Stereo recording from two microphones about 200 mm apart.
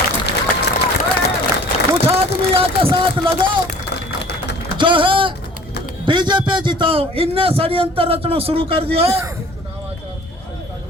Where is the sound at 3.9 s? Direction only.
55° left (ahead or behind).